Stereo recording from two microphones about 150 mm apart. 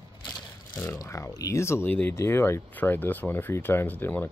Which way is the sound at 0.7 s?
20° left (ahead or behind).